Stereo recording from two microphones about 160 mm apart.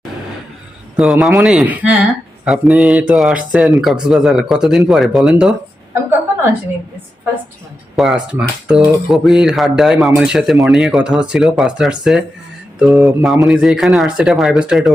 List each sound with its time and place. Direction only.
0.9 s speech: centre (ahead or behind)
5.9 s a sound: 15° right (ahead or behind)
7.9 s speech: 5° right (ahead or behind)